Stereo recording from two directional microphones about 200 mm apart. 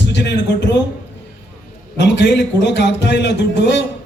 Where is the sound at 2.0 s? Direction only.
60° left (ahead or behind).